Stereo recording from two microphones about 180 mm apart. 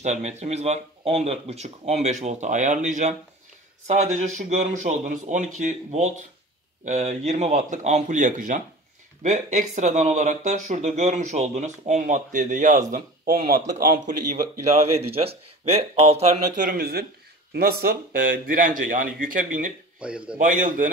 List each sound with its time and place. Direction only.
0.0 s speech: 40° right (ahead or behind)
20.0 s a man's voice: 5° right (ahead or behind)
20.3 s speech: 45° right (ahead or behind)